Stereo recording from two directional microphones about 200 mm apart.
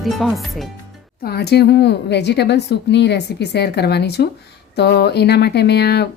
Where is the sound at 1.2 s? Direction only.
55° left (ahead or behind).